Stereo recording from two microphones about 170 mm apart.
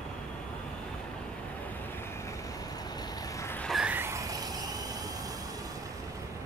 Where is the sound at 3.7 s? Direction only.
5° right (ahead or behind).